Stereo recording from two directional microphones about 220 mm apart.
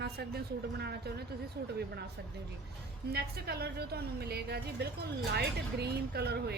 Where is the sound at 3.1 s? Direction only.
45° right (ahead or behind).